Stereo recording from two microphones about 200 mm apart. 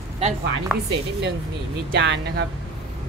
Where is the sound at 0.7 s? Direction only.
Centre (ahead or behind).